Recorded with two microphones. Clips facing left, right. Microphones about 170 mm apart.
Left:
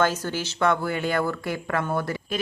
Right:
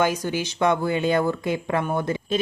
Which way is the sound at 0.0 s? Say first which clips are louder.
Right 1 dB; 15° right (ahead or behind).